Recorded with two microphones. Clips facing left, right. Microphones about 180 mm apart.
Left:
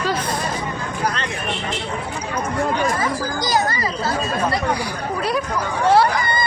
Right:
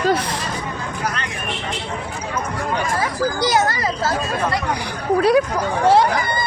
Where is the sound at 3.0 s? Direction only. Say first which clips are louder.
Right 2 dB; 70° right (ahead or behind).